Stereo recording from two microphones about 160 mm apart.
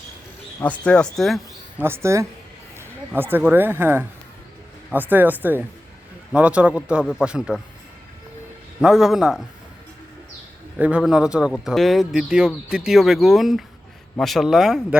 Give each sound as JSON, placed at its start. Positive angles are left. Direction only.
{"t": 0.6, "sound": "speech", "side_deg": 10}
{"t": 1.8, "sound": "speech", "side_deg": -15}
{"t": 8.8, "sound": "speech", "side_deg": -5}
{"t": 10.8, "sound": "speech", "side_deg": -5}